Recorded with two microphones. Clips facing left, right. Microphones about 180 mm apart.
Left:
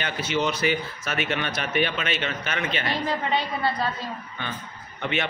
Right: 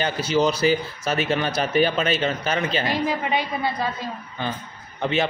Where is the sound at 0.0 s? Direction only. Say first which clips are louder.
Right 5 dB; 35° right (ahead or behind).